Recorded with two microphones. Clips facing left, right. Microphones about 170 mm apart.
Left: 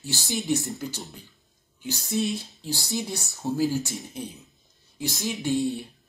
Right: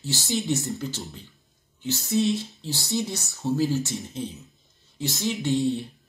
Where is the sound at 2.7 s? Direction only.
20° right (ahead or behind).